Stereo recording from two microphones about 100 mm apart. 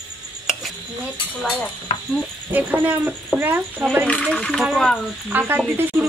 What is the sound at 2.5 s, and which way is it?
A woman's voice, 20° right (ahead or behind).